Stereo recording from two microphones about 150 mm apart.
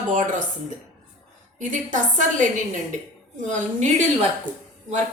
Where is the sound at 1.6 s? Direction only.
60° right (ahead or behind).